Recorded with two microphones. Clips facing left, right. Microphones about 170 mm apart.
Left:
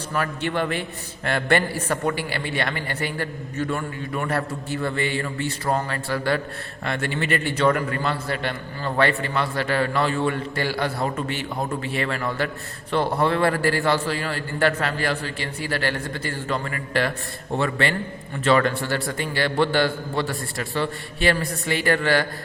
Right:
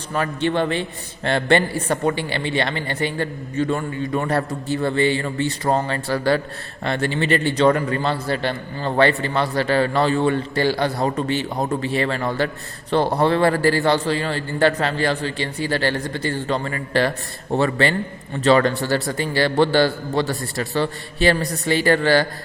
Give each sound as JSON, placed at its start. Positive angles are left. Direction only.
{"t": 0.1, "sound": "a man's voice", "side_deg": -25}